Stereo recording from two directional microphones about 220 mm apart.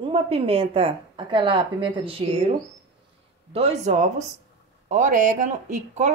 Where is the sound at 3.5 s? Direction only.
30° right (ahead or behind).